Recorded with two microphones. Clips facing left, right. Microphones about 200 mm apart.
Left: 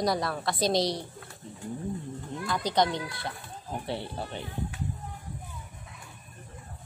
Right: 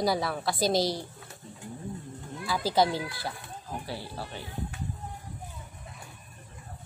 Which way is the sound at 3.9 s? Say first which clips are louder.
Left 3 dB; 20° left (ahead or behind).